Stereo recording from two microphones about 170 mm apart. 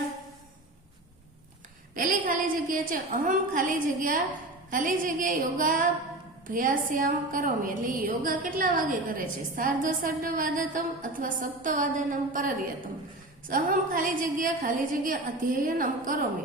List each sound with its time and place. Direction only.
2.0 s a woman's voice: 55° right (ahead or behind)